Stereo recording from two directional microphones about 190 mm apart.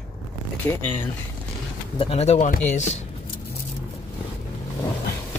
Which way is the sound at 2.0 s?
30° left (ahead or behind).